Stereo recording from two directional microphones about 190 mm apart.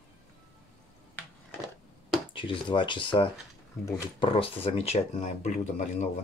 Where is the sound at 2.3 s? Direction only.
25° left (ahead or behind).